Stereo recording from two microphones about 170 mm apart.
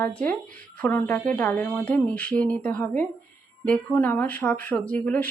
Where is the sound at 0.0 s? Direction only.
10° left (ahead or behind).